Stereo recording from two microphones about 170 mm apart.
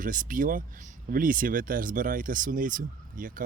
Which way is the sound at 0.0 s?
50° right (ahead or behind).